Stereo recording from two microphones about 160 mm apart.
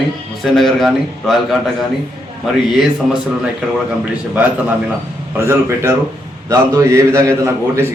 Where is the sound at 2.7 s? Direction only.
Centre (ahead or behind).